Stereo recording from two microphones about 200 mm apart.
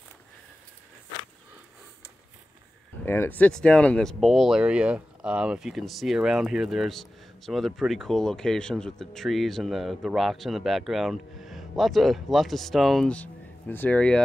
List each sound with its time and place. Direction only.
3.1 s speech: 10° left (ahead or behind)